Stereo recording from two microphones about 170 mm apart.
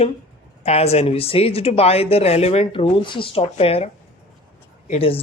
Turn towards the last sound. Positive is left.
turn(degrees=35)  # may be behind; listen again after turning